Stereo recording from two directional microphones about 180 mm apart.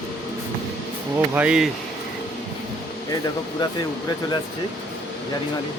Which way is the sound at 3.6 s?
25° left (ahead or behind).